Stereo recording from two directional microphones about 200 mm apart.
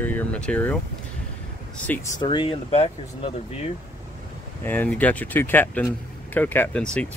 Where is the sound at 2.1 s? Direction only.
25° left (ahead or behind).